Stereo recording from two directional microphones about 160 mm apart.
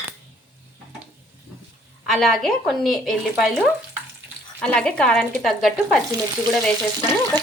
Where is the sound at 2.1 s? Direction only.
Centre (ahead or behind).